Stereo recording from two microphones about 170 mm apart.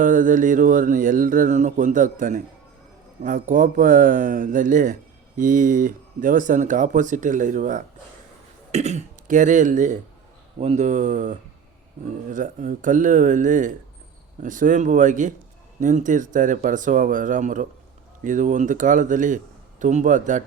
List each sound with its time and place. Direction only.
0.0 s speech: 50° right (ahead or behind)